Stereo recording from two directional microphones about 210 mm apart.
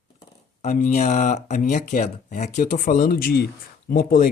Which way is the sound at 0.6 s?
35° left (ahead or behind).